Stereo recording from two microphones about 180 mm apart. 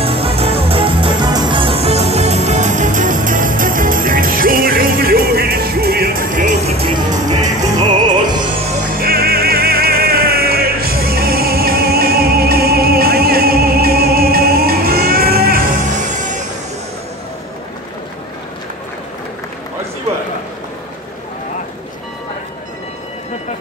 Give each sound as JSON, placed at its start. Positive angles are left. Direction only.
{"t": 0.0, "sound": "music", "side_deg": -30}
{"t": 8.9, "sound": "music", "side_deg": -55}